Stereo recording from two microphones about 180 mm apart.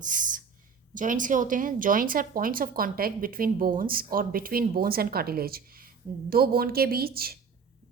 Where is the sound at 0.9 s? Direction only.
45° right (ahead or behind).